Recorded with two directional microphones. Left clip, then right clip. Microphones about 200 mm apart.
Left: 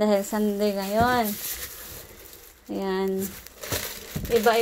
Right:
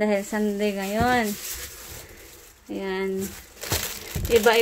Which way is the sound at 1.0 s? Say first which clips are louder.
Even; 40° right (ahead or behind).